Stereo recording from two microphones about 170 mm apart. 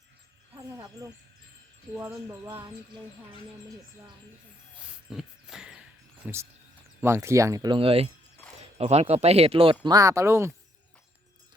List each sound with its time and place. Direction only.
0.8 s speech: 20° right (ahead or behind)
4.9 s a sound: 5° right (ahead or behind)
6.2 s speech: 10° right (ahead or behind); by 9.7 s 35° right (ahead or behind)
9.8 s speech: 20° right (ahead or behind)